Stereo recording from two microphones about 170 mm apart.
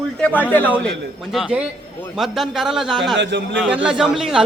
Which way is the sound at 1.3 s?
5° right (ahead or behind).